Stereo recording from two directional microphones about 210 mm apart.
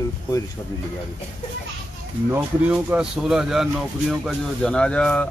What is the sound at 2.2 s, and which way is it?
Speech, 10° right (ahead or behind).